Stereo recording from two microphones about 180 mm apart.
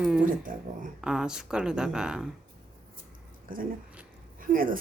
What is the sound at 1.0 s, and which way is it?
Speech, 5° right (ahead or behind).